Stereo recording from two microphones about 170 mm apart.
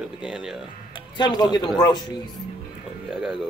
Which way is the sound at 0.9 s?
25° left (ahead or behind).